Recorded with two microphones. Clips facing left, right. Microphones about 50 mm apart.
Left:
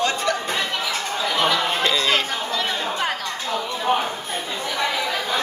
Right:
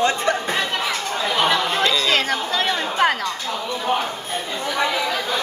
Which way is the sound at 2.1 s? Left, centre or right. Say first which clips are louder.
Right 3 dB; right.